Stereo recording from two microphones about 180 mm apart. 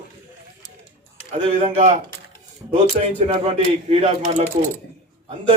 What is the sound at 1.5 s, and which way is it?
Speech, 35° right (ahead or behind).